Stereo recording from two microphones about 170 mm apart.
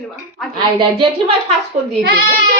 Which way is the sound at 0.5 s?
30° right (ahead or behind).